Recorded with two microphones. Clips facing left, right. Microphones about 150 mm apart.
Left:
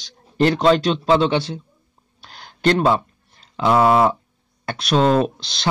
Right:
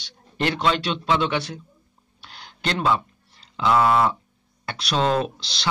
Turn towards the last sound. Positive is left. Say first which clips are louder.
# left 6 dB
turn(degrees=50)  # may be behind; listen again after turning